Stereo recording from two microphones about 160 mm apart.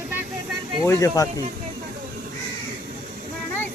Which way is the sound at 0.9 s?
20° left (ahead or behind).